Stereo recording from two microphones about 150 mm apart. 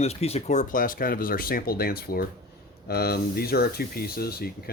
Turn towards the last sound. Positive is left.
turn(degrees=90)